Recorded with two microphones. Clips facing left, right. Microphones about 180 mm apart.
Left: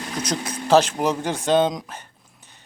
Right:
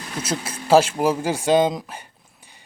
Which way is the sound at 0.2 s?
5° right (ahead or behind).